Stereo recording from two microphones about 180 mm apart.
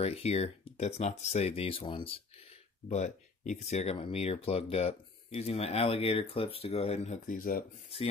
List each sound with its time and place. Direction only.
0.0 s speech: 35° left (ahead or behind)